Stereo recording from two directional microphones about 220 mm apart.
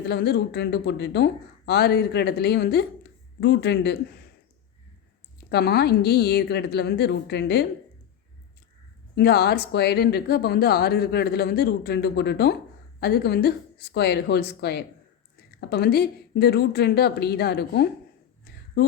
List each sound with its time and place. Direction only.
0.1 s speech: 50° left (ahead or behind)
5.5 s speech: 45° left (ahead or behind)
9.1 s speech: 45° left (ahead or behind)